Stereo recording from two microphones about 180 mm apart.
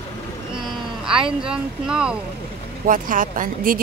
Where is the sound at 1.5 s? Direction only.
5° right (ahead or behind).